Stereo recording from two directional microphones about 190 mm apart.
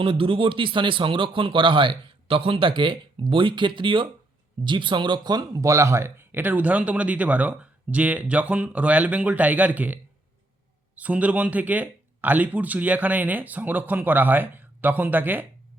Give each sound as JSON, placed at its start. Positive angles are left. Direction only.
{"t": 0.0, "sound": "a man's voice", "side_deg": -25}